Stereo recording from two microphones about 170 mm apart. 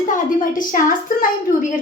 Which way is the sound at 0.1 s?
55° left (ahead or behind).